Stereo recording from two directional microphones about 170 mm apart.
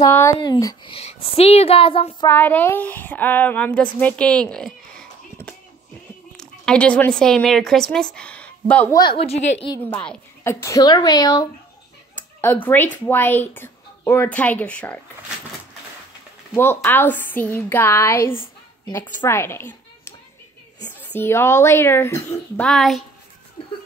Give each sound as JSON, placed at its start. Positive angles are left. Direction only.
{"t": 0.0, "sound": "a woman's voice", "side_deg": 15}
{"t": 0.9, "sound": "speech", "side_deg": 35}
{"t": 2.2, "sound": "a woman's voice", "side_deg": 10}
{"t": 8.9, "sound": "speech", "side_deg": 30}
{"t": 9.8, "sound": "a woman's voice", "side_deg": 10}
{"t": 12.2, "sound": "speech", "side_deg": 10}
{"t": 16.5, "sound": "a woman's voice", "side_deg": 10}
{"t": 22.7, "sound": "speech", "side_deg": 0}